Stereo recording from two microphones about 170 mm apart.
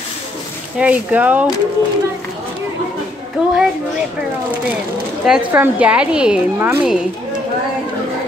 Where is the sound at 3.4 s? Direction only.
5° right (ahead or behind).